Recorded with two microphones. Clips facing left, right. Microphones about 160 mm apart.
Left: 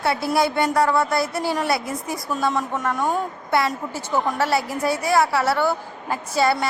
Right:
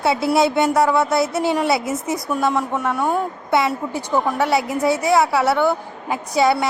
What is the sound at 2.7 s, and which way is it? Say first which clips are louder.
A woman's voice: right 3 dB; 10° right (ahead or behind).